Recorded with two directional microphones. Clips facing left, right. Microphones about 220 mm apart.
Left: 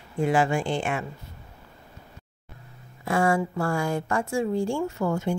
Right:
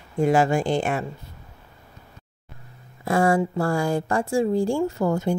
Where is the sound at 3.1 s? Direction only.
35° right (ahead or behind).